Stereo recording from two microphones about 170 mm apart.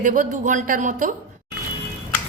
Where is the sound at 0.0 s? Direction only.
50° right (ahead or behind).